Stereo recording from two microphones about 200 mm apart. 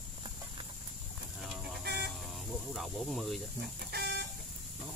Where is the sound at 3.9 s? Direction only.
55° right (ahead or behind).